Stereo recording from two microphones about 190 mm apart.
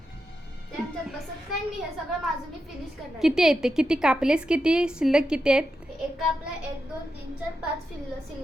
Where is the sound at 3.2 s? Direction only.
Centre (ahead or behind).